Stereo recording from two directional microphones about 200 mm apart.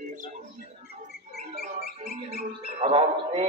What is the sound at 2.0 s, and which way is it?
Music, 50° right (ahead or behind).